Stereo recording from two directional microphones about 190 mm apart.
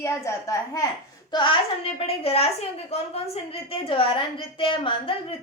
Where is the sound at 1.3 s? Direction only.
25° left (ahead or behind).